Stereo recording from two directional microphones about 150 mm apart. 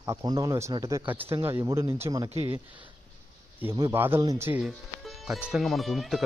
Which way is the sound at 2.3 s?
45° right (ahead or behind).